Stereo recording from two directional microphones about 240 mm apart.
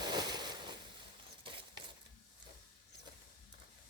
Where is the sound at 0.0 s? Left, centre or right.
Centre.